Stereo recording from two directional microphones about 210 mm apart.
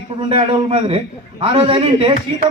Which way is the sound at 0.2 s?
25° right (ahead or behind).